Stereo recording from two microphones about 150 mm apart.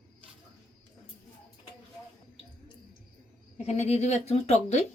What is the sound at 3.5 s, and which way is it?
Speech, 45° left (ahead or behind).